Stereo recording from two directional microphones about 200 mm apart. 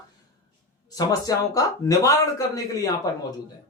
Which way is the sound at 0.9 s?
20° left (ahead or behind).